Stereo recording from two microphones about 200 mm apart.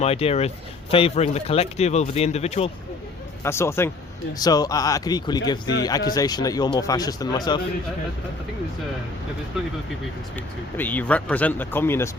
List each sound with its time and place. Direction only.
0.0 s speech: 30° left (ahead or behind)
3.4 s speech: 15° left (ahead or behind)
10.8 s speech: 10° left (ahead or behind)